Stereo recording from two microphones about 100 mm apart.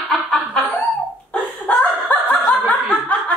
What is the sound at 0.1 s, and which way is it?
Snicker, centre (ahead or behind).